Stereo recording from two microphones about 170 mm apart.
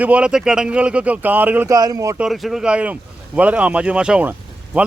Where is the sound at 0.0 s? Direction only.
5° right (ahead or behind).